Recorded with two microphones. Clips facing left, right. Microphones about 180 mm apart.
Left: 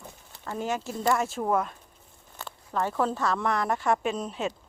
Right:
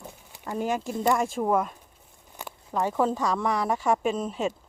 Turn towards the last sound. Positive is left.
turn(degrees=-5)  # may be behind; listen again after turning